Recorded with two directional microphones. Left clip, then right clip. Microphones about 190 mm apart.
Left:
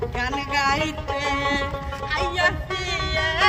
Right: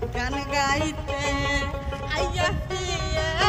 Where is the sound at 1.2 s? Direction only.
15° right (ahead or behind).